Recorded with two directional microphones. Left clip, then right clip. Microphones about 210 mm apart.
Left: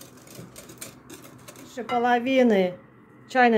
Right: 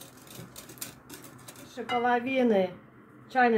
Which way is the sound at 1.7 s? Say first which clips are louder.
Left 4 dB; 35° left (ahead or behind).